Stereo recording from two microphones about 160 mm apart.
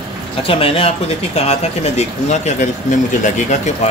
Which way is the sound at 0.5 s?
35° left (ahead or behind).